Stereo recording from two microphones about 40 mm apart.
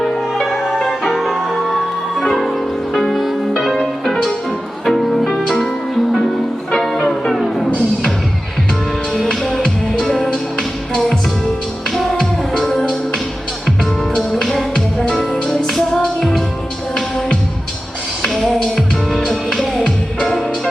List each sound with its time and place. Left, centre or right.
0.0 s music: centre
7.1 s music: centre
9.1 s music: centre
12.1 s music: centre
12.7 s music: centre
14.5 s music: left
15.3 s music: centre
18.4 s music: centre